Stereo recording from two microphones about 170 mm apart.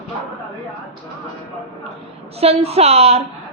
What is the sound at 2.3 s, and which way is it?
Child singing, 35° right (ahead or behind).